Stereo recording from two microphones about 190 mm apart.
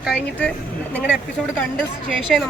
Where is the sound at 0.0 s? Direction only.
5° left (ahead or behind).